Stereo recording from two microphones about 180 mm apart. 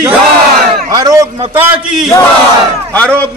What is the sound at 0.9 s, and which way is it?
Speech, 20° right (ahead or behind).